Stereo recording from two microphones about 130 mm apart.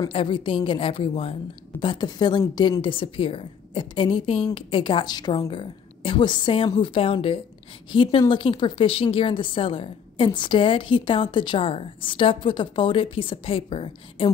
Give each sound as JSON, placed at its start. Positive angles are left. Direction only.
{"t": 0.1, "sound": "a woman's voice", "side_deg": 40}
{"t": 1.8, "sound": "a woman's voice", "side_deg": 35}